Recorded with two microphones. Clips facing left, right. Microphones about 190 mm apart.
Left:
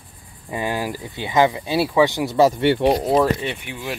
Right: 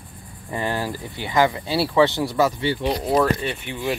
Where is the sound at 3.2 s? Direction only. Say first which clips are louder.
Left 1 dB; 15° left (ahead or behind).